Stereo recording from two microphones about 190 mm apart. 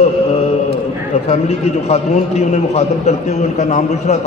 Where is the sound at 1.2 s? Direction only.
35° left (ahead or behind).